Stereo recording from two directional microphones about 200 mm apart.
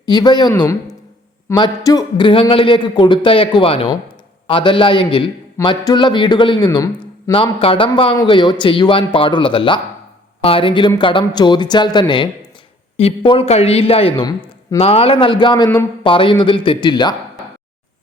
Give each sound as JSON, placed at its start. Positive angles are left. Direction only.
{"t": 0.0, "sound": "a man's voice", "side_deg": 20}